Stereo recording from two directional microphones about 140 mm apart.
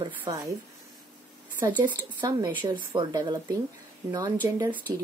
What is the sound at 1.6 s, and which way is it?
Speech, 35° right (ahead or behind).